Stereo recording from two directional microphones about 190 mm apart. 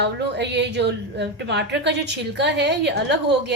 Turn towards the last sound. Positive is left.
turn(degrees=-65)  # may be behind; listen again after turning